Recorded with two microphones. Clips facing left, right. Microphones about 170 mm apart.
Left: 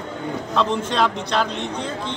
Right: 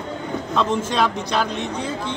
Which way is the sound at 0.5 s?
5° right (ahead or behind).